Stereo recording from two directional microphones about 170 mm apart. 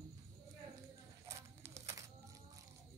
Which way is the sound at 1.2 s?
15° right (ahead or behind).